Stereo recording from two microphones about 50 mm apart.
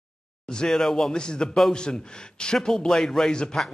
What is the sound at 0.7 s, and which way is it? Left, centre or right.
A man's voice, centre.